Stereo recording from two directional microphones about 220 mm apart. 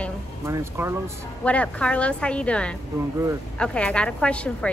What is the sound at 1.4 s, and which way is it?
A child's voice, 5° left (ahead or behind).